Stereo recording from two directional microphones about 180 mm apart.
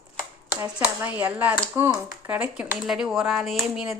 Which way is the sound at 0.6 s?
10° right (ahead or behind).